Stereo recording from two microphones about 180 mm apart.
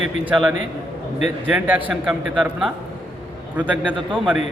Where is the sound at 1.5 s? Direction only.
10° right (ahead or behind).